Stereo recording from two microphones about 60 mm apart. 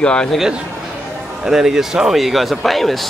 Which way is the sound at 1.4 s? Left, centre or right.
Centre.